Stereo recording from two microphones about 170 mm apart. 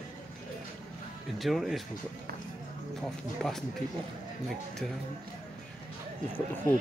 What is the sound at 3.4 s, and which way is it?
Speech, centre (ahead or behind).